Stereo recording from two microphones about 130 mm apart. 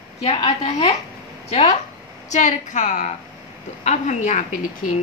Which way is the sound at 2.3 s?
65° left (ahead or behind).